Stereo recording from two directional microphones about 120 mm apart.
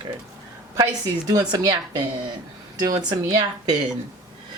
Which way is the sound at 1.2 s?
30° right (ahead or behind).